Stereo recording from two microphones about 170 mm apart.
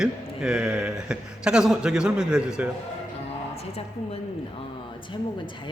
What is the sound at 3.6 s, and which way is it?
Speech, 35° left (ahead or behind).